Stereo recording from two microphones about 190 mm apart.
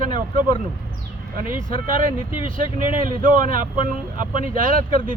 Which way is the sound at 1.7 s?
45° right (ahead or behind).